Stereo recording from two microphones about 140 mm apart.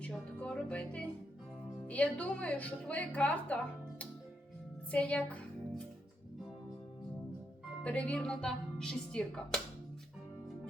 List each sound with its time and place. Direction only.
0.0 s a woman's voice: 5° left (ahead or behind)
4.9 s music: 10° left (ahead or behind)
7.9 s speech: 10° left (ahead or behind)